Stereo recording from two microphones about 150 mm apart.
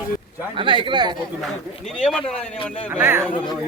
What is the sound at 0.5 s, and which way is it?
Speech, 35° right (ahead or behind).